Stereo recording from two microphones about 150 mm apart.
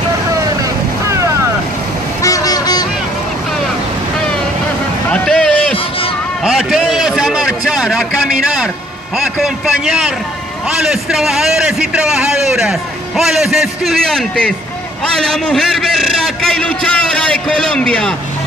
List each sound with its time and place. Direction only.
1.0 s vehicle: 20° right (ahead or behind)
2.2 s vehicle: 25° left (ahead or behind)
5.1 s a sound: 5° left (ahead or behind)
13.2 s a man's voice: centre (ahead or behind)